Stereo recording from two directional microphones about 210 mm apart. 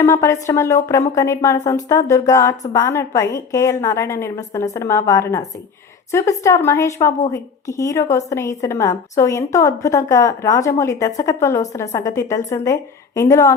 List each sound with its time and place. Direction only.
0.0 s a woman's voice: 15° left (ahead or behind)